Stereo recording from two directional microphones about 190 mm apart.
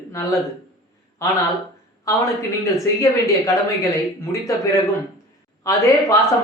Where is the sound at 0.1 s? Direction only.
15° left (ahead or behind).